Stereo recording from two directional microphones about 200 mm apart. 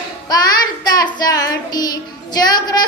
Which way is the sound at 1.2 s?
20° left (ahead or behind).